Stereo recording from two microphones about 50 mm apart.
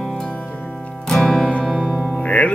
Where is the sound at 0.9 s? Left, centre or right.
Centre.